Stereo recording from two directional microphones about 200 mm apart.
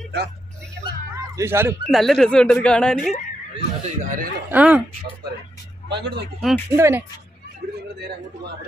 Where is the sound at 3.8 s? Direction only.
40° right (ahead or behind).